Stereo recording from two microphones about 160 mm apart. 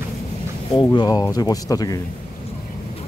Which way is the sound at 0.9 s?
25° left (ahead or behind).